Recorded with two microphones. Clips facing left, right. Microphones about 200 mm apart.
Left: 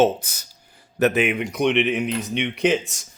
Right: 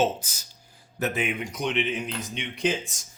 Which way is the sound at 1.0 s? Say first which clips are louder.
Left 8 dB; 75° left (ahead or behind).